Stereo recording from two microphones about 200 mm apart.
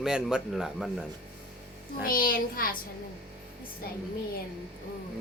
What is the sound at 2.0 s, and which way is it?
Speech, 45° left (ahead or behind).